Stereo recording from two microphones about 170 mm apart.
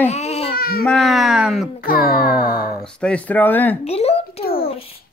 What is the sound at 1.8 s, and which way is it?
Music, 60° left (ahead or behind).